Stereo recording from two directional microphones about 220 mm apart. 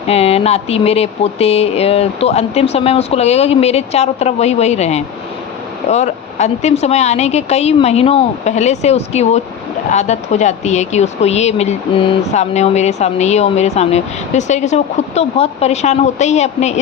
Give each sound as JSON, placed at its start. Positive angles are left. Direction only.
{"t": 0.1, "sound": "a woman's voice", "side_deg": 25}